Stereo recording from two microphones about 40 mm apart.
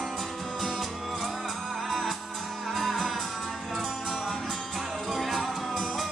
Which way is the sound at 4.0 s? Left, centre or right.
Centre.